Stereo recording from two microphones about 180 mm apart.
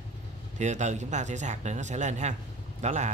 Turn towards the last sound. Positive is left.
turn(degrees=-40)  # may be behind; listen again after turning